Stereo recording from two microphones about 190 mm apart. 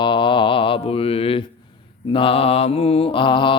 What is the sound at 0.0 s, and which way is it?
Mantra, 25° left (ahead or behind).